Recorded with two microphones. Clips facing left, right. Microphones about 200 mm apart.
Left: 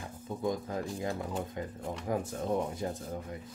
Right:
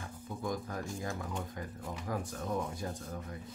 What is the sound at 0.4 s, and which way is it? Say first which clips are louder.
Speech: left 4 dB; 25° left (ahead or behind).